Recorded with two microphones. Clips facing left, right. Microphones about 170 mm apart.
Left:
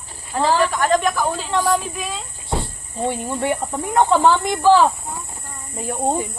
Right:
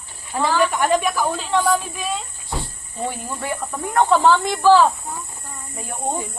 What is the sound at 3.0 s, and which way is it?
Speech, 25° left (ahead or behind).